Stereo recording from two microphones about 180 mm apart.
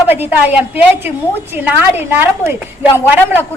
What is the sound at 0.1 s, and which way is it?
A woman's voice, 10° right (ahead or behind).